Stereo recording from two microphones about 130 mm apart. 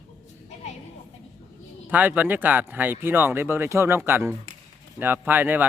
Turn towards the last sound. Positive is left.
turn(degrees=-15)  # may be behind; listen again after turning